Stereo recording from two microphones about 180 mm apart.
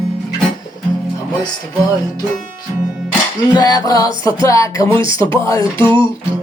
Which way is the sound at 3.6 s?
20° left (ahead or behind).